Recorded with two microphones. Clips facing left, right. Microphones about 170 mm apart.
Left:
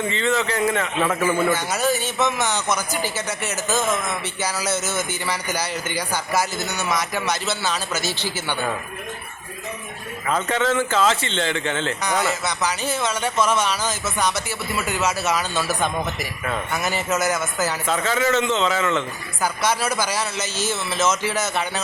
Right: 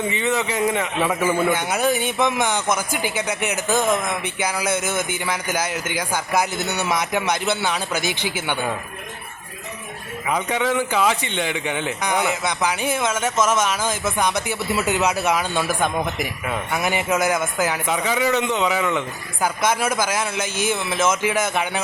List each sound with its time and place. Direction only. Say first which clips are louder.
0.1 s a man's voice: even; 15° right (ahead or behind)
5.7 s a man's voice: right 1 dB; 5° right (ahead or behind)
10.2 s a man's voice: even; 15° right (ahead or behind)
13.4 s speech: right 1 dB; 45° right (ahead or behind)
14.4 s a man's voice: right 4 dB; 20° right (ahead or behind)